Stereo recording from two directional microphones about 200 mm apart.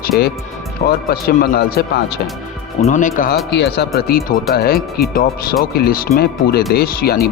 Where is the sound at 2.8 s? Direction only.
40° left (ahead or behind).